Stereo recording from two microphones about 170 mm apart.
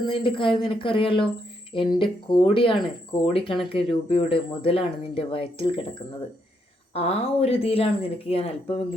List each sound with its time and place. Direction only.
0.1 s speech: 30° left (ahead or behind)